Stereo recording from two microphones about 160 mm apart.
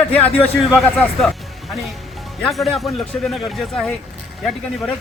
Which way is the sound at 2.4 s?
Centre (ahead or behind).